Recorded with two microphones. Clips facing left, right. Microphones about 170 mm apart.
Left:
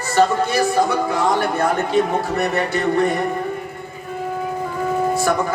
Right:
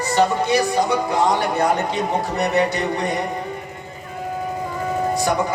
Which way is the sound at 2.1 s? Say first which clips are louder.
Even; 20° right (ahead or behind).